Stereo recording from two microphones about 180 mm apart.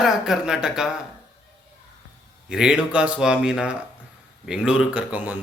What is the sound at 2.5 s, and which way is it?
Speech, 5° right (ahead or behind).